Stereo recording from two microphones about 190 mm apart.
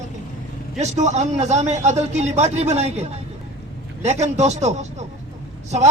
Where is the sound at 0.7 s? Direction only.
35° right (ahead or behind).